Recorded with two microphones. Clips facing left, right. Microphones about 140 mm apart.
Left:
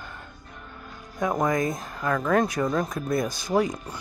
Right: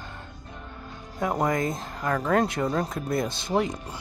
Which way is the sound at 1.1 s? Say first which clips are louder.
Left 1 dB; 30° right (ahead or behind).